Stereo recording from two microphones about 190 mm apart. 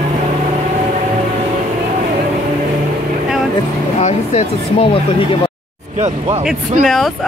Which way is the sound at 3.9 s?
35° left (ahead or behind).